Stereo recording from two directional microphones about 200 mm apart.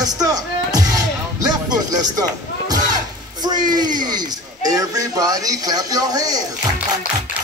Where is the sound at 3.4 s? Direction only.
20° right (ahead or behind).